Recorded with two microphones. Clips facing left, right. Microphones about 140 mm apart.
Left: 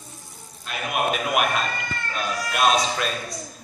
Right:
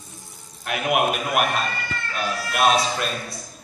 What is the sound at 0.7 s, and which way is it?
Speech, 65° right (ahead or behind).